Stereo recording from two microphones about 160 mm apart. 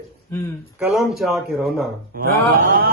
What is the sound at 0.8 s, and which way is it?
A man's voice, centre (ahead or behind).